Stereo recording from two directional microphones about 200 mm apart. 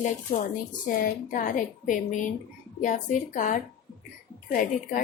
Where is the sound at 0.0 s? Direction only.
35° left (ahead or behind).